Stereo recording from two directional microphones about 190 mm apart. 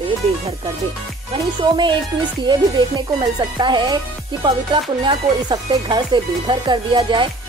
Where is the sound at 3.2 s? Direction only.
25° right (ahead or behind).